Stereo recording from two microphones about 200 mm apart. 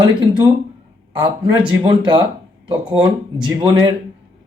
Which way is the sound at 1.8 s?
25° right (ahead or behind).